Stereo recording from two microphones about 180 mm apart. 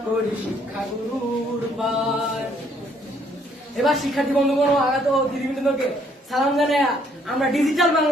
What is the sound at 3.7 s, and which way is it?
A woman's voice, centre (ahead or behind).